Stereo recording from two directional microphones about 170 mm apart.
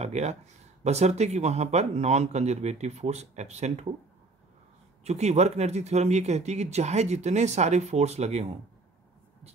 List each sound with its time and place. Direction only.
0.0 s speech: 40° right (ahead or behind)
5.0 s speech: 40° right (ahead or behind)